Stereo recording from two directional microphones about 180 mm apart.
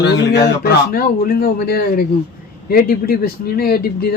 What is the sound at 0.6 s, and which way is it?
A man's voice, 60° left (ahead or behind).